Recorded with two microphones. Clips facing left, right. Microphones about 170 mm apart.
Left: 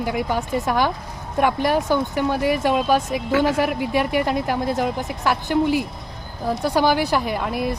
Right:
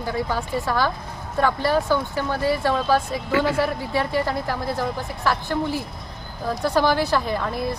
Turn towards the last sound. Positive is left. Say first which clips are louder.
# left 2 dB
turn(degrees=10)  # may be behind; listen again after turning